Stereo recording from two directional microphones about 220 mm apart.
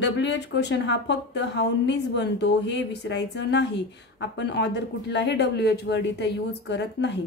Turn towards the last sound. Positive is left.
turn(degrees=50)  # may be behind; listen again after turning